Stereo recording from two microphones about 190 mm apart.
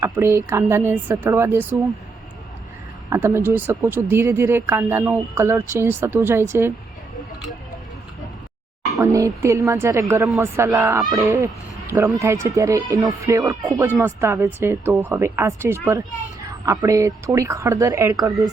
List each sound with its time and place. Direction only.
0.0 s speech: 15° right (ahead or behind)
3.1 s speech: 15° right (ahead or behind)
9.0 s speech: 15° right (ahead or behind)